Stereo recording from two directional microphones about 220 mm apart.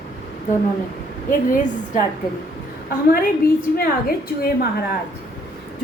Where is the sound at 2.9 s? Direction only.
40° left (ahead or behind).